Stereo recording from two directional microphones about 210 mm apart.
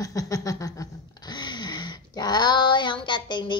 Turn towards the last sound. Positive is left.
turn(degrees=20)  # may be behind; listen again after turning